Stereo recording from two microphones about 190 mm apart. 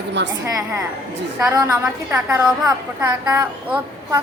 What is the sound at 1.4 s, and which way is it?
A woman's voice, 20° right (ahead or behind).